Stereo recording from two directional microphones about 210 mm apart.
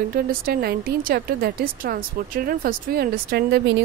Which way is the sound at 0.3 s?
45° right (ahead or behind).